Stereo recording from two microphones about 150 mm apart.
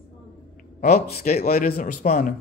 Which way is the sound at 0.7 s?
90° left.